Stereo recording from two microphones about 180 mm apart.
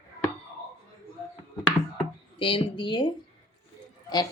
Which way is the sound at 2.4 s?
30° left (ahead or behind).